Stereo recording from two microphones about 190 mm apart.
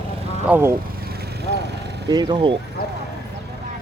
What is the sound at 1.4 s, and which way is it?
Vehicle, 60° right (ahead or behind).